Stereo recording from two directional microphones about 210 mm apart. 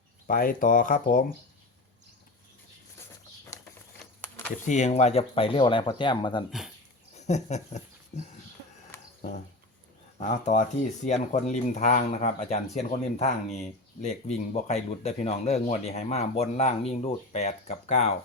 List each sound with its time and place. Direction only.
0.3 s speech: 40° left (ahead or behind)
4.6 s speech: 35° left (ahead or behind)
10.2 s speech: 35° left (ahead or behind)